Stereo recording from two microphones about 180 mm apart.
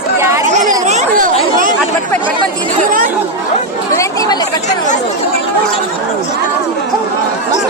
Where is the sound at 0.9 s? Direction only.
45° right (ahead or behind).